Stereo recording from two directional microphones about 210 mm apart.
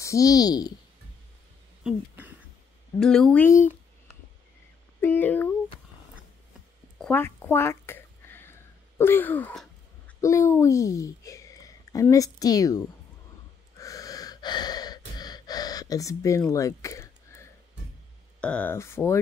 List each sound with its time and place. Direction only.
0.0 s speech: 15° left (ahead or behind)
1.8 s speech: 5° right (ahead or behind)
5.0 s speech: 10° left (ahead or behind)
7.0 s a sound: 10° left (ahead or behind)
13.7 s gasp: 15° left (ahead or behind)
18.4 s speech: 5° left (ahead or behind)